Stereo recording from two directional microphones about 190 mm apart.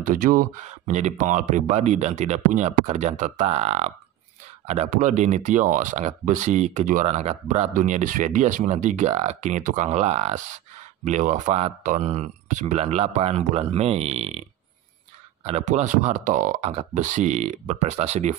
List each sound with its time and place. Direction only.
0.0 s speech: 45° right (ahead or behind)
15.4 s speech: 35° right (ahead or behind)